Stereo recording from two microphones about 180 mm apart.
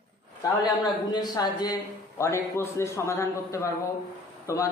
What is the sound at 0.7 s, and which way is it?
A man's voice, 20° left (ahead or behind).